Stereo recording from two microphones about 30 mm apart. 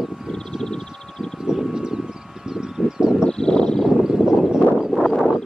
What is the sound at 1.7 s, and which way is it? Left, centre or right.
Vehicle, right.